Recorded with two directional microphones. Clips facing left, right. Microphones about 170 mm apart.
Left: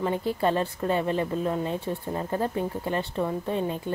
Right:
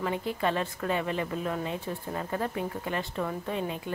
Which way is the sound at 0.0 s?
35° left (ahead or behind).